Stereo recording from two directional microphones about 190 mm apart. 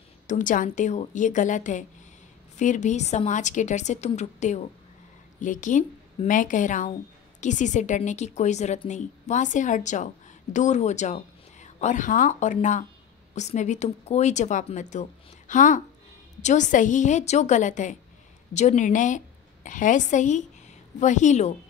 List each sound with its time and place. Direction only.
0.3 s a woman's voice: 45° left (ahead or behind)